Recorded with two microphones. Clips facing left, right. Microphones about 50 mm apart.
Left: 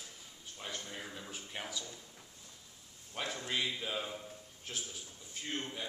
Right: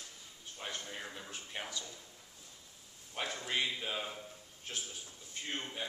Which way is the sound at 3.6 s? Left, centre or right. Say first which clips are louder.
Even; centre.